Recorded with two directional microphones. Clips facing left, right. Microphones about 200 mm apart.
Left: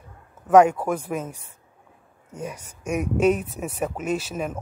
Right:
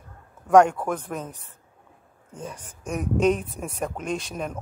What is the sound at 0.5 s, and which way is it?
Speech, 5° left (ahead or behind).